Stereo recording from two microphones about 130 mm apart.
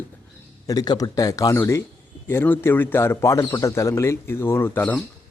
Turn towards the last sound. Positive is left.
turn(degrees=15)  # may be behind; listen again after turning